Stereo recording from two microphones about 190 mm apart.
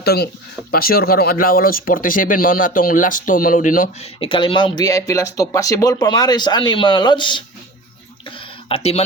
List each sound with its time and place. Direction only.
0.0 s speech: 55° left (ahead or behind)
4.2 s speech: 25° left (ahead or behind)
8.4 s a sound: 30° left (ahead or behind)